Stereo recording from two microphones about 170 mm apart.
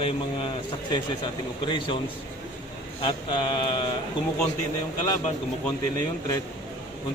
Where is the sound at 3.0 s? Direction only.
35° left (ahead or behind).